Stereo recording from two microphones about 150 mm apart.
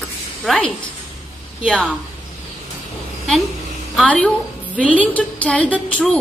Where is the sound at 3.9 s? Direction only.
5° left (ahead or behind).